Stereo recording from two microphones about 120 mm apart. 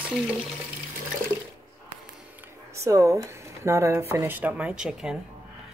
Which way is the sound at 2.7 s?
25° right (ahead or behind).